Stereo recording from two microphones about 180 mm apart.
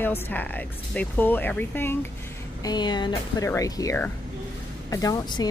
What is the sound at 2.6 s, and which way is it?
Speech, 25° left (ahead or behind).